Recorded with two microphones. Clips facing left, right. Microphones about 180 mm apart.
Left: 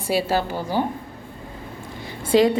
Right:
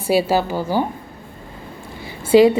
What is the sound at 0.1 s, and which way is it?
Speech, 5° right (ahead or behind).